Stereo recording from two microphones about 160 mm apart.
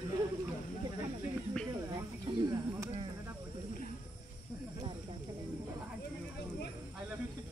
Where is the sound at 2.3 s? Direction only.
30° right (ahead or behind).